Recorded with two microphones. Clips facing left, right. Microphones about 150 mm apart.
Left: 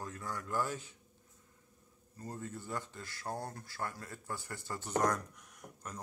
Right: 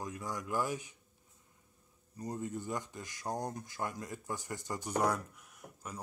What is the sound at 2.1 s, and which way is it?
Speech, 15° right (ahead or behind).